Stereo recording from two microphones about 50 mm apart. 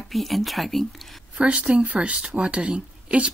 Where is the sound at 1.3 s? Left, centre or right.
Right.